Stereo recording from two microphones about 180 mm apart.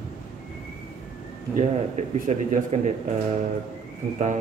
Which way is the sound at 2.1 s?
45° right (ahead or behind).